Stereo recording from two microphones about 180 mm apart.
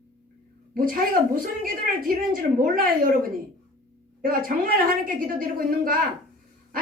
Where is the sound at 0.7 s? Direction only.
50° right (ahead or behind).